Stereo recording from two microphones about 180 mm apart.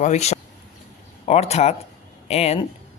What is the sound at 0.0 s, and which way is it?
Speech, 40° left (ahead or behind).